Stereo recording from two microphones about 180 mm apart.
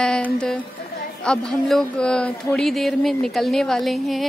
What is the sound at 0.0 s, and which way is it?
A woman's voice, 5° left (ahead or behind).